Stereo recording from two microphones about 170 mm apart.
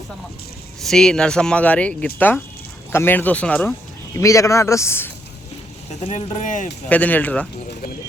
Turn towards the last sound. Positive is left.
turn(degrees=10)  # may be behind; listen again after turning